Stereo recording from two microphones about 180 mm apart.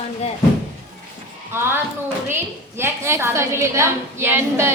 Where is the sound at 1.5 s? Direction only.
15° right (ahead or behind).